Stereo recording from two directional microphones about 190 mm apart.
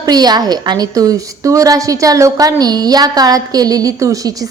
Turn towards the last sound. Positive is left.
turn(degrees=-20)  # may be behind; listen again after turning